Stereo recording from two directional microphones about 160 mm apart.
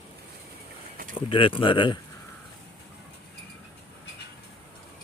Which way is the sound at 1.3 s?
35° left (ahead or behind).